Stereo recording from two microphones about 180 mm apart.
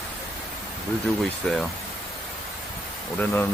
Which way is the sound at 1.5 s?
5° left (ahead or behind).